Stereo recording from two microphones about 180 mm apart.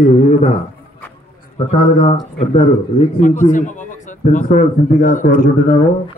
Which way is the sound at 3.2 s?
45° left (ahead or behind).